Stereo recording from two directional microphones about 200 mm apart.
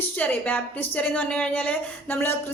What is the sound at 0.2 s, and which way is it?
A woman's voice, 10° left (ahead or behind).